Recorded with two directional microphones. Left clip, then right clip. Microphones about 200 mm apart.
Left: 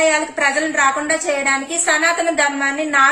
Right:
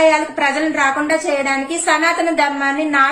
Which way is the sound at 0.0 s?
5° left (ahead or behind).